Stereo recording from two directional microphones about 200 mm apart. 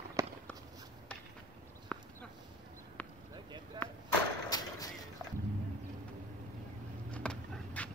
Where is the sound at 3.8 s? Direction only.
20° right (ahead or behind).